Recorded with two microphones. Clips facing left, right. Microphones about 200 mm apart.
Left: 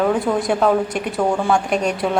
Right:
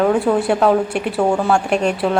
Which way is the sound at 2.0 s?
5° left (ahead or behind).